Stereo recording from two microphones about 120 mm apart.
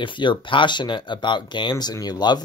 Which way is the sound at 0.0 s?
40° left (ahead or behind).